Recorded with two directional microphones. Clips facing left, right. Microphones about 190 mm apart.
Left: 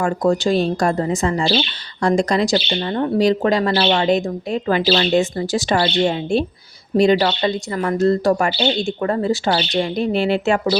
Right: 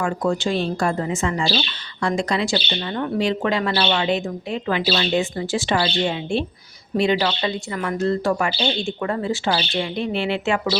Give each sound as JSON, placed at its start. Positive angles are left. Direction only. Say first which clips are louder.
{"t": 0.0, "sound": "speech", "louder": "left 4 dB", "side_deg": 40}